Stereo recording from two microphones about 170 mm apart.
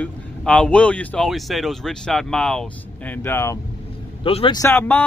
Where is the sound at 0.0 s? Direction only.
5° left (ahead or behind).